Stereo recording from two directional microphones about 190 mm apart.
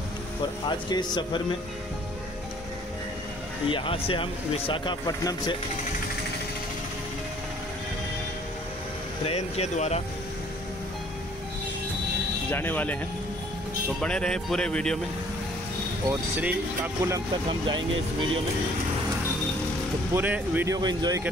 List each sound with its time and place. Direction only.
0.7 s speech: 20° left (ahead or behind)
3.6 s speech: 25° left (ahead or behind)
9.2 s speech: 30° left (ahead or behind)
12.4 s speech: 10° left (ahead or behind)
14.0 s speech: 5° left (ahead or behind)
16.1 s speech: 10° right (ahead or behind); by 17.8 s 25° right (ahead or behind)
20.2 s speech: 10° right (ahead or behind)